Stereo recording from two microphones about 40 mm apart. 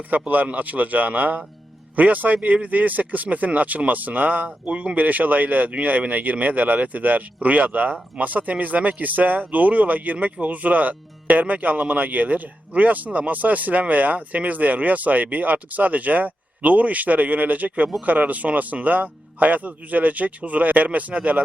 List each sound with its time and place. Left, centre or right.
0.1 s speech: right
4.4 s speech: right